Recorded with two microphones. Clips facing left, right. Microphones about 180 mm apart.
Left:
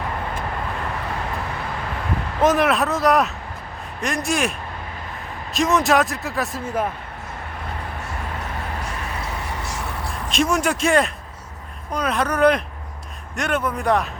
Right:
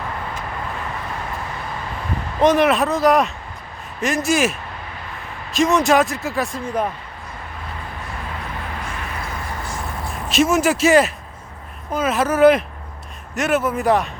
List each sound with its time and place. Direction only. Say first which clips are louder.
2.4 s a man's voice: right 3 dB; centre (ahead or behind)
5.5 s a man's voice: right 2 dB; centre (ahead or behind)
8.8 s music: even; 70° left (ahead or behind)
10.2 s a man's voice: right 4 dB; 5° right (ahead or behind)